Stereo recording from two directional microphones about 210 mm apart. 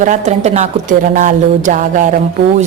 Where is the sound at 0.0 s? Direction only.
35° right (ahead or behind).